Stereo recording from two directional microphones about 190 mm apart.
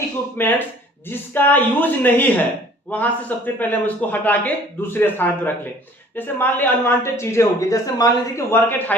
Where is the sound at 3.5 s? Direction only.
10° left (ahead or behind).